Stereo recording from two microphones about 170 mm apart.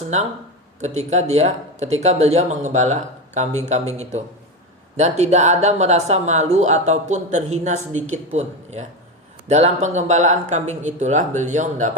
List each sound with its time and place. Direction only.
0.8 s speech: 40° right (ahead or behind)